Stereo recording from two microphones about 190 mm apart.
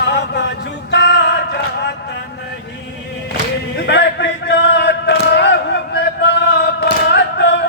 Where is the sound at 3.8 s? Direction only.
65° left (ahead or behind).